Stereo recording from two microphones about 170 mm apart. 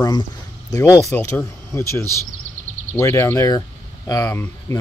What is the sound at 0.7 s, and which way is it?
Speech, 20° left (ahead or behind).